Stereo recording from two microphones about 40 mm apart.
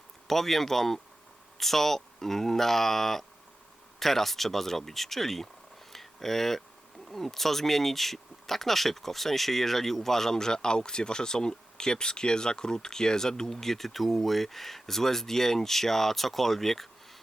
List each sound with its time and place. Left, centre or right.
0.3 s speech: centre
5.9 s a sound: centre
7.1 s speech: centre